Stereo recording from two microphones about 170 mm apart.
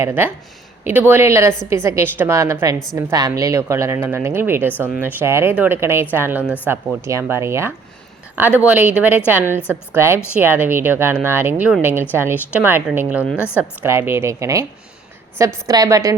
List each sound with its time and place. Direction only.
0.0 s a woman's voice: 10° right (ahead or behind)